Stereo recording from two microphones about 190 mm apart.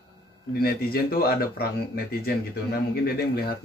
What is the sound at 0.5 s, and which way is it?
Speech, 55° left (ahead or behind).